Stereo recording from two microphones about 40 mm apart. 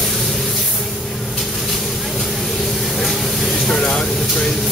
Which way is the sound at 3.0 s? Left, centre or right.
Centre.